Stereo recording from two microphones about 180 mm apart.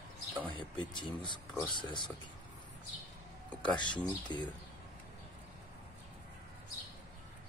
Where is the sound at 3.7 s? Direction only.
25° left (ahead or behind).